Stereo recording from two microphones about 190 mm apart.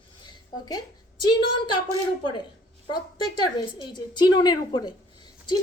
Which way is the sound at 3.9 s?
20° left (ahead or behind).